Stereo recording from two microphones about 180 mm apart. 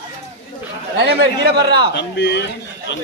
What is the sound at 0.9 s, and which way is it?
Speech, 65° right (ahead or behind).